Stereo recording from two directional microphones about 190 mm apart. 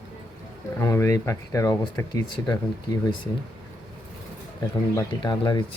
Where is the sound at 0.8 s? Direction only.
15° left (ahead or behind).